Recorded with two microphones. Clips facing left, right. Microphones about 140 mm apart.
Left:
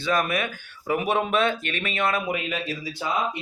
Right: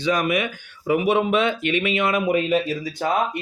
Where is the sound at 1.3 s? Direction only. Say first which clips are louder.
Right 2 dB; 45° left (ahead or behind).